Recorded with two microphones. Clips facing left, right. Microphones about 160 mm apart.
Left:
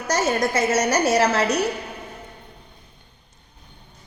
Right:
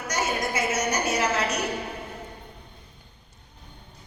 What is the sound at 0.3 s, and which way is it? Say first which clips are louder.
Speech: left 6 dB; 75° left (ahead or behind).